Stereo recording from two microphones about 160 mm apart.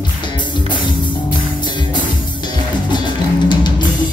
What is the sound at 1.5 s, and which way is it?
Music, 30° left (ahead or behind).